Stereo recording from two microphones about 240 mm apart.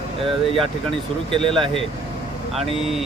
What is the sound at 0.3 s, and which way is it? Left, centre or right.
Speech, right.